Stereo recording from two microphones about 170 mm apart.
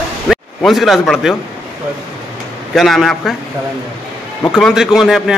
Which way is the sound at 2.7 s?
Centre (ahead or behind).